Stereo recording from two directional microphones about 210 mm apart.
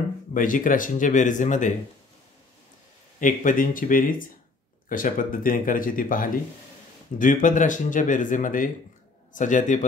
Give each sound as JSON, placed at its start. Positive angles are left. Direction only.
{"t": 0.3, "sound": "speech", "side_deg": 40}
{"t": 3.2, "sound": "speech", "side_deg": 40}